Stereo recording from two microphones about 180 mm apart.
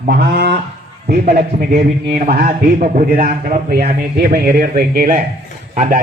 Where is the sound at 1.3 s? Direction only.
35° right (ahead or behind).